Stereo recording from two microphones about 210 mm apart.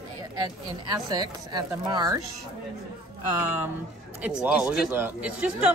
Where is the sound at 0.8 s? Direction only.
20° right (ahead or behind).